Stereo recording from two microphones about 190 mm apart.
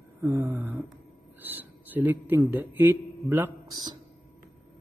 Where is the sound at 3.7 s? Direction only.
20° right (ahead or behind).